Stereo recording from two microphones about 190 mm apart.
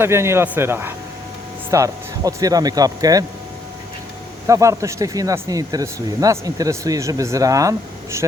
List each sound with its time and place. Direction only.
0.0 s speech: 15° right (ahead or behind)
4.4 s speech: 15° right (ahead or behind)